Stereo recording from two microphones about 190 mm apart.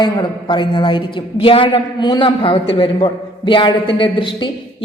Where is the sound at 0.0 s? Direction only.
25° left (ahead or behind).